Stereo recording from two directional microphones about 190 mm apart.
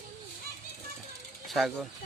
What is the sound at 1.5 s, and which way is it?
Speech, centre (ahead or behind).